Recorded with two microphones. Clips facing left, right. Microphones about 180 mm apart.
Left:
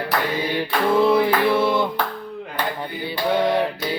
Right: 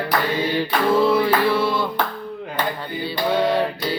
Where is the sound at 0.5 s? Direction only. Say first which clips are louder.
Even; 20° left (ahead or behind).